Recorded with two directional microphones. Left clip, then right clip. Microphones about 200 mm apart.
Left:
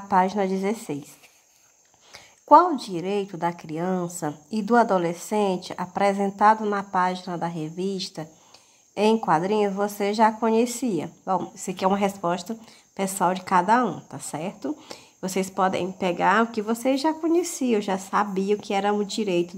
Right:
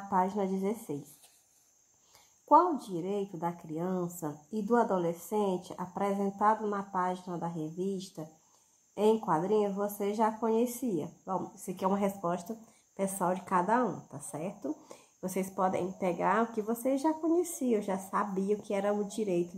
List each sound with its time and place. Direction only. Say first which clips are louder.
0.1 s a woman's voice: left 9 dB; 25° left (ahead or behind)
2.1 s a woman's voice: left 9 dB; 25° left (ahead or behind)